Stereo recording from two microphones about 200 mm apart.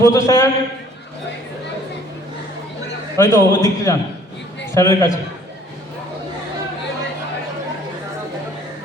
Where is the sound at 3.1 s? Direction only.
15° left (ahead or behind).